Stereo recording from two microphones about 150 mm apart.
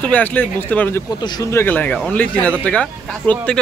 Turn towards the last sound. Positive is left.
turn(degrees=10)  # may be behind; listen again after turning